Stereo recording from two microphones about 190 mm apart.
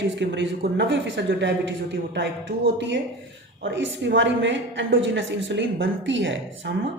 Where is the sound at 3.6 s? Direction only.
75° right (ahead or behind).